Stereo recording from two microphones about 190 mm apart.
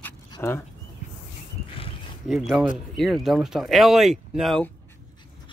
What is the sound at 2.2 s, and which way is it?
Speech, centre (ahead or behind).